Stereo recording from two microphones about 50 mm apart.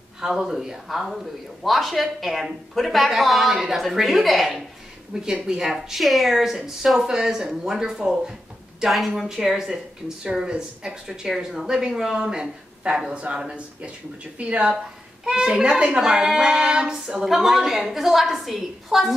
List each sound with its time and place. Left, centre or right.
0.2 s speech: centre
5.1 s speech: centre
11.2 s speech: centre